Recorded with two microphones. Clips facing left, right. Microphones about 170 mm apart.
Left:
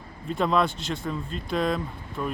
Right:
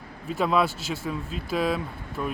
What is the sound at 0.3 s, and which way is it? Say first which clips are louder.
Speech: even; 5° right (ahead or behind).